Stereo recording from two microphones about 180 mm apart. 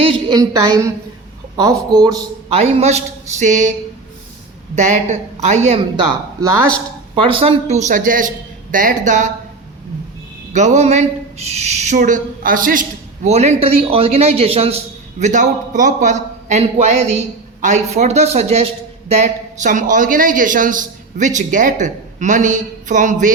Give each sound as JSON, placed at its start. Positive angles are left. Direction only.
{"t": 0.3, "sound": "a woman's voice", "side_deg": -15}
{"t": 2.5, "sound": "speech", "side_deg": -35}
{"t": 7.2, "sound": "a man's voice", "side_deg": -30}
{"t": 10.5, "sound": "speech", "side_deg": -40}
{"t": 13.2, "sound": "speech", "side_deg": -35}
{"t": 15.2, "sound": "a man's voice", "side_deg": -45}